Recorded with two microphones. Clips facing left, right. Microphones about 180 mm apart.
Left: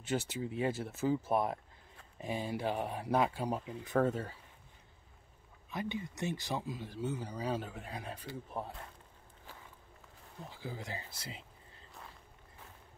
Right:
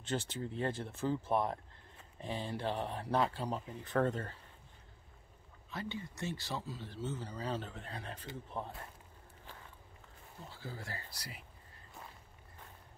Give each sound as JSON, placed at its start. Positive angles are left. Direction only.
{"t": 0.0, "sound": "speech", "side_deg": 10}
{"t": 5.7, "sound": "speech", "side_deg": 15}
{"t": 10.5, "sound": "speech", "side_deg": 15}